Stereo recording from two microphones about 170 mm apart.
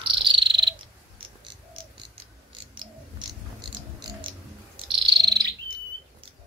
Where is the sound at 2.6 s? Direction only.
30° right (ahead or behind).